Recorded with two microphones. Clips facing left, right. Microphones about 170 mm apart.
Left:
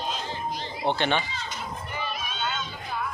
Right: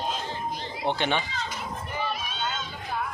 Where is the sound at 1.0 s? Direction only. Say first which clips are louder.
Left 1 dB; 10° right (ahead or behind).